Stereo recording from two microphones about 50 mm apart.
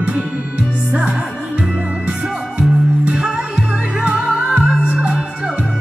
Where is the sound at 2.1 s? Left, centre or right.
Right.